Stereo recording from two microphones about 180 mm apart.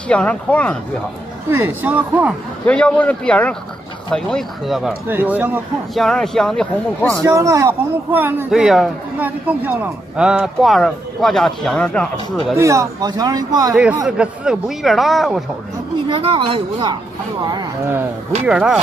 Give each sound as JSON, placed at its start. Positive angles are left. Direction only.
{"t": 0.1, "sound": "speech", "side_deg": 5}
{"t": 1.7, "sound": "speech", "side_deg": -10}
{"t": 2.6, "sound": "a man's voice", "side_deg": 5}
{"t": 6.0, "sound": "a man's voice", "side_deg": 5}
{"t": 7.2, "sound": "a man's voice", "side_deg": -20}
{"t": 12.5, "sound": "a man's voice", "side_deg": -15}
{"t": 13.7, "sound": "a man's voice", "side_deg": -5}
{"t": 16.1, "sound": "a man's voice", "side_deg": -30}
{"t": 17.5, "sound": "speech", "side_deg": -20}
{"t": 18.4, "sound": "a man's voice", "side_deg": -5}